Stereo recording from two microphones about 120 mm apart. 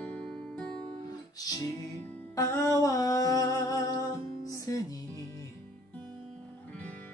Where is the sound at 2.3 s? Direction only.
25° left (ahead or behind).